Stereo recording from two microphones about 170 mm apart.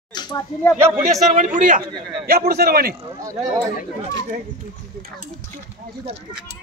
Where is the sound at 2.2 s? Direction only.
65° right (ahead or behind).